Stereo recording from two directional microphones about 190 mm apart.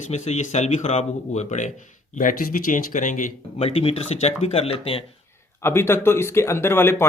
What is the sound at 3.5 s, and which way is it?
Speech, 30° left (ahead or behind).